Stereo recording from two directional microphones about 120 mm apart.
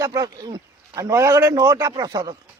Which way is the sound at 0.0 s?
30° right (ahead or behind).